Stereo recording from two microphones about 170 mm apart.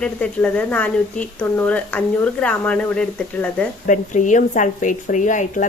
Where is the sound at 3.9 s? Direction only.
45° left (ahead or behind).